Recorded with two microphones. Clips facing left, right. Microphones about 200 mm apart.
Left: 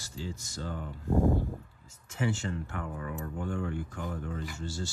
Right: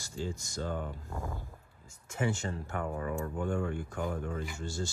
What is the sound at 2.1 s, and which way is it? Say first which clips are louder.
Speech: left 1 dB; 45° right (ahead or behind).